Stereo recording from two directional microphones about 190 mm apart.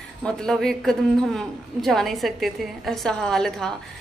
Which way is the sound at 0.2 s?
5° left (ahead or behind).